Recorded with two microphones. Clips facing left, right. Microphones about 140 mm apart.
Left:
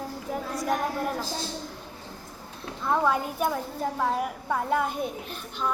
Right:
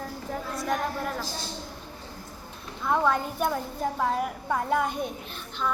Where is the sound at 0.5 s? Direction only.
15° left (ahead or behind).